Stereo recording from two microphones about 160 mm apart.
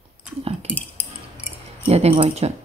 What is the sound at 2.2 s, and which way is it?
Speech, 40° right (ahead or behind).